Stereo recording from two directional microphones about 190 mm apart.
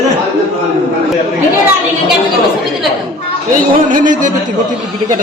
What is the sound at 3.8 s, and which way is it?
Speech, 45° right (ahead or behind).